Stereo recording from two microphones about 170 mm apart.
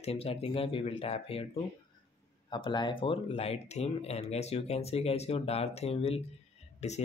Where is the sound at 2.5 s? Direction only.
25° left (ahead or behind).